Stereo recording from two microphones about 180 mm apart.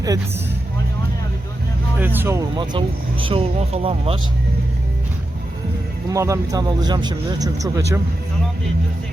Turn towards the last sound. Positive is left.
turn(degrees=-20)  # may be behind; listen again after turning